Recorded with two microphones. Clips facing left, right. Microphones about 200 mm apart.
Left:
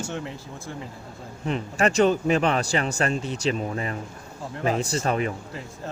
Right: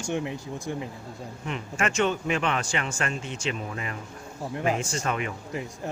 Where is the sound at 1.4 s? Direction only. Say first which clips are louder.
Left 6 dB; 35° left (ahead or behind).